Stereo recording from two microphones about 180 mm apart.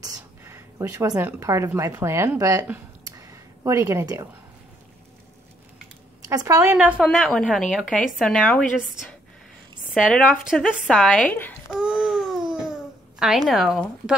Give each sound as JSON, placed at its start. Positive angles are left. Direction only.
{"t": 0.0, "sound": "speech", "side_deg": -20}
{"t": 6.2, "sound": "a woman's voice", "side_deg": -20}
{"t": 10.1, "sound": "a woman's voice", "side_deg": 0}
{"t": 11.7, "sound": "a sound", "side_deg": -5}
{"t": 13.2, "sound": "a woman's voice", "side_deg": 0}